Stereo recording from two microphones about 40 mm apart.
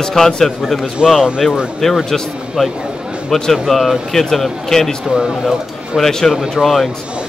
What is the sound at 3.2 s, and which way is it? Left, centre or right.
A man's voice, centre.